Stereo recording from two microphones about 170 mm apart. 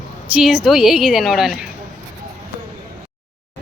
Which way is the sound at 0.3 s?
5° right (ahead or behind).